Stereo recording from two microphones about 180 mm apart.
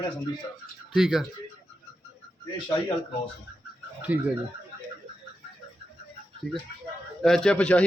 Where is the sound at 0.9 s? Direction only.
Centre (ahead or behind).